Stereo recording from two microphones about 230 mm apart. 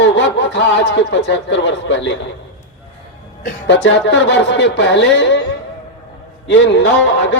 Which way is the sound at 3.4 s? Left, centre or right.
Left.